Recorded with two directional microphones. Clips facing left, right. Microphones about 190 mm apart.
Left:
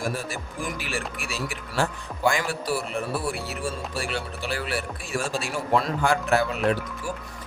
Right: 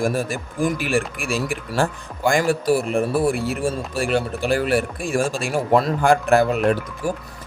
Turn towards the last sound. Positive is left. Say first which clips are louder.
# right 5 dB
turn(degrees=-50)  # may be behind; listen again after turning